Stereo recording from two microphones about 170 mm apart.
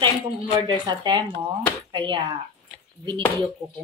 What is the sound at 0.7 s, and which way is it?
A woman's voice, 25° right (ahead or behind).